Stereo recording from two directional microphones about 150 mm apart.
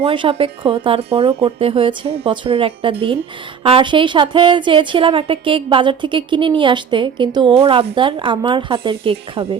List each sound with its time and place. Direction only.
0.0 s a woman's voice: 35° right (ahead or behind)